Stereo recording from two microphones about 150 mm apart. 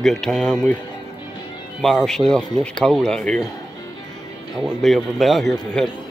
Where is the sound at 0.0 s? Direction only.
5° left (ahead or behind).